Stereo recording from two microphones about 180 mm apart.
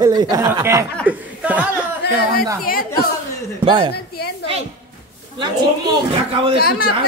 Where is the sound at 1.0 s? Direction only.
10° right (ahead or behind).